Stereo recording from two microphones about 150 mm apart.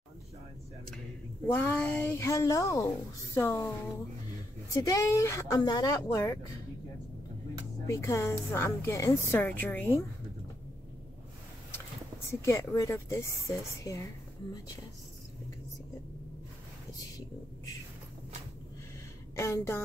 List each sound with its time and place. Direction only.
1.5 s a woman's voice: 10° left (ahead or behind)
4.8 s a woman's voice: 20° left (ahead or behind)
7.8 s a woman's voice: 20° left (ahead or behind)
12.3 s a woman's voice: 20° left (ahead or behind)
19.3 s a woman's voice: 20° left (ahead or behind)